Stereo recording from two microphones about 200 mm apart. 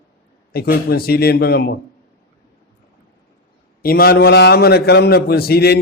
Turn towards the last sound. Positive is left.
turn(degrees=50)  # may be behind; listen again after turning